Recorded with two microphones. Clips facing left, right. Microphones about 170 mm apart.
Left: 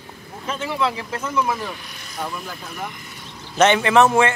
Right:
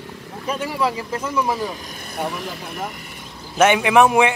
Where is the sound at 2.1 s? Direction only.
75° right (ahead or behind).